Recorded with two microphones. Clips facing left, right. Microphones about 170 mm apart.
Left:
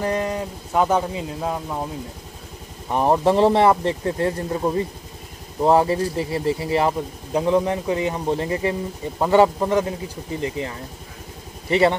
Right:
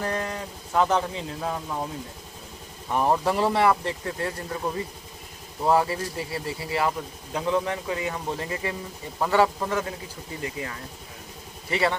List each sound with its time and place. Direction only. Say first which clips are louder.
0.0 s speech: left 6 dB; 15° left (ahead or behind)
2.9 s speech: left 5 dB; 20° left (ahead or behind)